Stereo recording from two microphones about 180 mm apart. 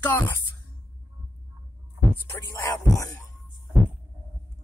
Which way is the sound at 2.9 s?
20° left (ahead or behind).